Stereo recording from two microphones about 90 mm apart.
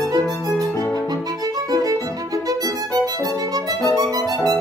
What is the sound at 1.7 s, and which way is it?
Violin, 40° right (ahead or behind).